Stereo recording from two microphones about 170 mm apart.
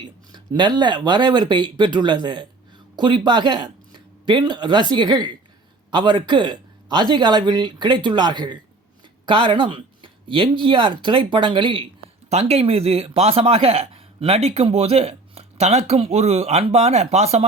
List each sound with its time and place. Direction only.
0.0 s speech: 25° right (ahead or behind)